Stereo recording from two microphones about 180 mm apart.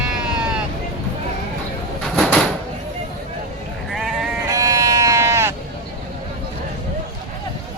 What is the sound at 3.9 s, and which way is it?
Sheep, centre (ahead or behind).